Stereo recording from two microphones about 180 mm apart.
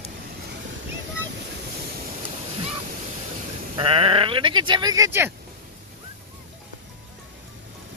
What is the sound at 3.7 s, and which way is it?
Speech, 30° right (ahead or behind).